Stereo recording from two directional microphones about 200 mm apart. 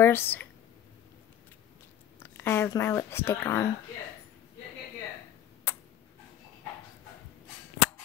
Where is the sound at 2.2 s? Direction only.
10° left (ahead or behind).